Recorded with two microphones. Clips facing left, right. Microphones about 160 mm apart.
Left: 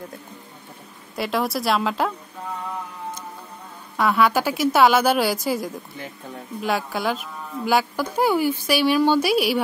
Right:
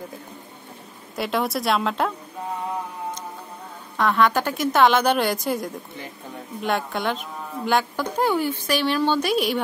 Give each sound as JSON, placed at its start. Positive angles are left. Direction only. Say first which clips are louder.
{"t": 1.1, "sound": "a woman's voice", "louder": "even", "side_deg": 0}
{"t": 3.9, "sound": "a woman's voice", "louder": "left 1 dB", "side_deg": 5}